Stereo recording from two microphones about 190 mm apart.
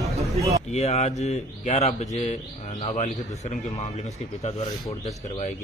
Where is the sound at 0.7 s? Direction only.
35° left (ahead or behind).